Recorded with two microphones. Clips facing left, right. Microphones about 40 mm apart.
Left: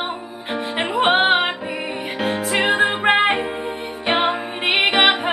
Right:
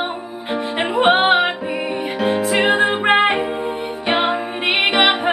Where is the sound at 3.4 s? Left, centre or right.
Left.